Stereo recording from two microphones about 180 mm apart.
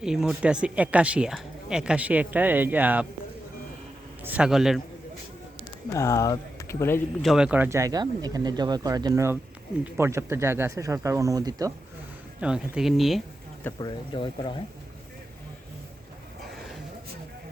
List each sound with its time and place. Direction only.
0.0 s speech: 5° right (ahead or behind)
4.2 s speech: 10° right (ahead or behind)
5.9 s speech: 15° left (ahead or behind)
7.2 s speech: centre (ahead or behind); by 11.7 s 20° right (ahead or behind)
12.4 s speech: 5° right (ahead or behind)
13.7 s speech: 25° left (ahead or behind)